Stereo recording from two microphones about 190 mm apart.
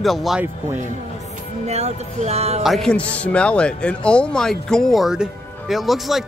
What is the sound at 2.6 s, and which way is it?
A man's voice, centre (ahead or behind).